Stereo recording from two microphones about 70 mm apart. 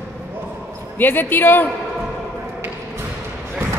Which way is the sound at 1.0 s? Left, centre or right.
Left.